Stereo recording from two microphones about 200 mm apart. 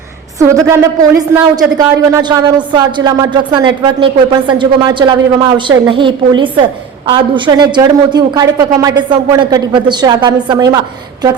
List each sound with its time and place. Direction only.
0.3 s a woman's voice: 15° right (ahead or behind)